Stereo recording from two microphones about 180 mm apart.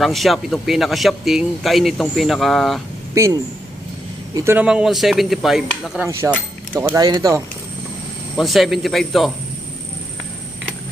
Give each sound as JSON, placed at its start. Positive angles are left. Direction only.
{"t": 0.0, "sound": "speech", "side_deg": 0}
{"t": 3.2, "sound": "speech", "side_deg": -15}
{"t": 4.4, "sound": "speech", "side_deg": -10}
{"t": 8.4, "sound": "speech", "side_deg": 0}